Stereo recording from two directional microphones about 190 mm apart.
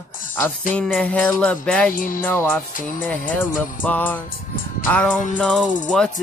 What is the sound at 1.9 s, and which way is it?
Music, 45° left (ahead or behind).